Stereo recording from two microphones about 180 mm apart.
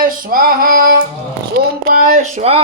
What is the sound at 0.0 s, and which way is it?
Female singing, 50° right (ahead or behind).